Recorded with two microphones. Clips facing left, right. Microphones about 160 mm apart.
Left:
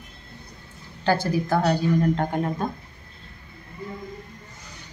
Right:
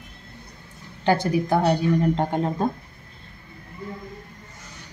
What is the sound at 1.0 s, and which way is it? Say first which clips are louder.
A woman's voice: right 2 dB; 20° right (ahead or behind).